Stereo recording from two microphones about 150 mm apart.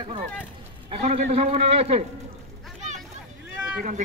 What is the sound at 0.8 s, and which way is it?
A man's voice, 45° right (ahead or behind).